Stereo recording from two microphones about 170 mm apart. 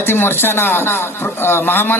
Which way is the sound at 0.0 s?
15° left (ahead or behind).